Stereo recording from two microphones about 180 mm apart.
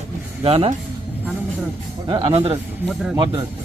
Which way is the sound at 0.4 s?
35° right (ahead or behind).